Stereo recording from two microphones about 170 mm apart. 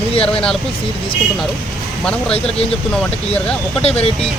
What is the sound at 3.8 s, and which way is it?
Speech, 35° left (ahead or behind).